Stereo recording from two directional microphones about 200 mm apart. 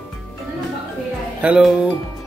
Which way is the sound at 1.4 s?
5° right (ahead or behind).